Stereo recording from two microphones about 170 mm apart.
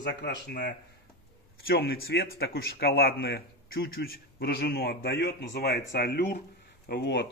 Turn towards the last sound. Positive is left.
turn(degrees=90)